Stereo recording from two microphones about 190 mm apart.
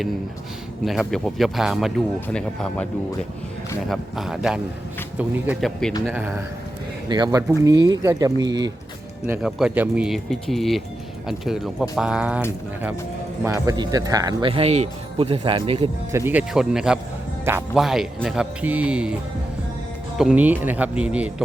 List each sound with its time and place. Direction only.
0.9 s speech: centre (ahead or behind)
3.8 s speech: centre (ahead or behind)
7.1 s speech: 20° right (ahead or behind)
9.2 s speech: 10° right (ahead or behind)
13.4 s speech: 15° right (ahead or behind)
16.1 s speech: 10° right (ahead or behind)
20.1 s speech: 5° right (ahead or behind)